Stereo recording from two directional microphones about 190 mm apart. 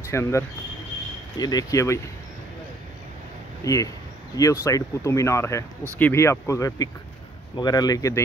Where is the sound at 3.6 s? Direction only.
15° left (ahead or behind).